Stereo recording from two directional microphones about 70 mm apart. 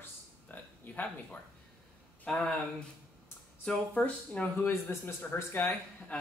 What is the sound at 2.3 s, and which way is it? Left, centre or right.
Speech, centre.